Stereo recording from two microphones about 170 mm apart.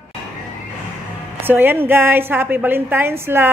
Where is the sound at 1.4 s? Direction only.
10° right (ahead or behind).